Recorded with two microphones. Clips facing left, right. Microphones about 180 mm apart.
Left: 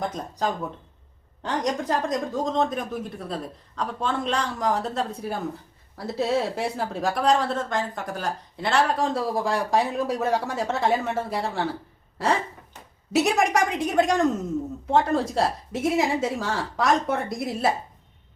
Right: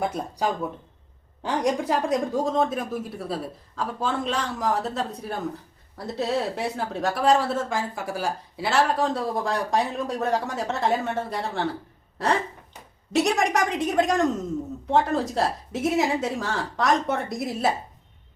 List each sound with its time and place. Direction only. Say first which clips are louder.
0.0 s a woman's voice: right 1 dB; 10° right (ahead or behind)
13.1 s a woman's voice: left 1 dB; centre (ahead or behind)